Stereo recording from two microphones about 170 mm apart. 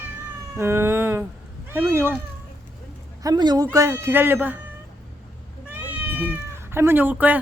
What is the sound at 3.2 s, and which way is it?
A man's voice, 25° right (ahead or behind).